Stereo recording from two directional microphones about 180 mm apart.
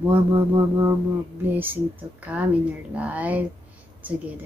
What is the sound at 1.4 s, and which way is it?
Speech, 10° right (ahead or behind).